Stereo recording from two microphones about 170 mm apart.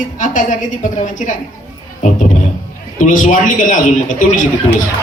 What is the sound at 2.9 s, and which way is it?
A woman's voice, 50° left (ahead or behind).